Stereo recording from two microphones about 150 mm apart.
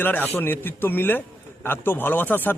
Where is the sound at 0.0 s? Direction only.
15° left (ahead or behind).